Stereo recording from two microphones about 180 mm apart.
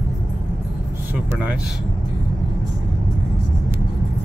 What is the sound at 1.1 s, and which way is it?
Speech, 10° right (ahead or behind).